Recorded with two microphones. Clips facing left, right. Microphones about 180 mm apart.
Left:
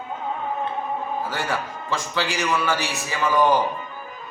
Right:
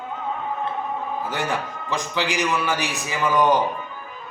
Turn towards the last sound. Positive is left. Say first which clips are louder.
# even
turn(degrees=-20)  # may be behind; listen again after turning